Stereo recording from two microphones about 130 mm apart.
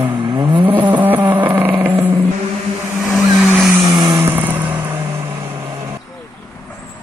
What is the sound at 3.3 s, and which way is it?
Vehicle, 5° right (ahead or behind).